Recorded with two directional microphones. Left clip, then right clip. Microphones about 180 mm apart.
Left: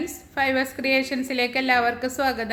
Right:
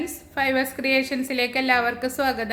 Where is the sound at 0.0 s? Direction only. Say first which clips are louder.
Even; centre (ahead or behind).